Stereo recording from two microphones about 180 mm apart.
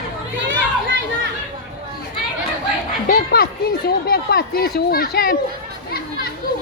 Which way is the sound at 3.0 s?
55° left (ahead or behind).